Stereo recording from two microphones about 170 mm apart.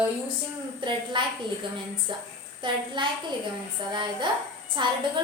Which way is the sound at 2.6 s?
25° right (ahead or behind).